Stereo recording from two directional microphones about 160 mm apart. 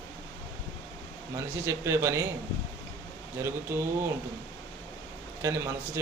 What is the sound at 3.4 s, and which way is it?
Speech, 15° right (ahead or behind).